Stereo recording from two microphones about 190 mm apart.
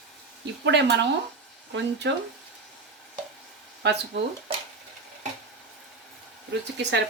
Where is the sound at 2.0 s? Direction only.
65° right (ahead or behind).